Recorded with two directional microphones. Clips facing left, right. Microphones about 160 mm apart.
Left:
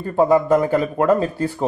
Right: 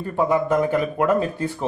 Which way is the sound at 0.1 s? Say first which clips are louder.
Left 5 dB; 35° left (ahead or behind).